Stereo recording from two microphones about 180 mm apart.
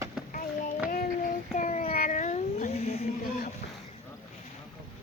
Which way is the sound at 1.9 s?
50° left (ahead or behind).